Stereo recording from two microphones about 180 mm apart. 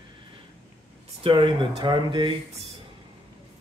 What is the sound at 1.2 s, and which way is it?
Speech, 30° right (ahead or behind).